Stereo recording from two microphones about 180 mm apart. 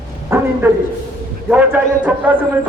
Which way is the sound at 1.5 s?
5° right (ahead or behind).